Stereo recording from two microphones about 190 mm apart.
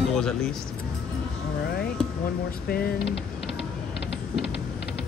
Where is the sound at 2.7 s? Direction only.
55° left (ahead or behind).